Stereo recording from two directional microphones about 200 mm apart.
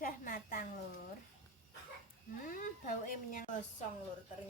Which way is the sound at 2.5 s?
40° left (ahead or behind).